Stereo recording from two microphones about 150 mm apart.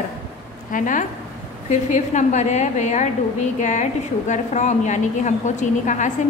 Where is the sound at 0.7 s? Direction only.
60° left (ahead or behind).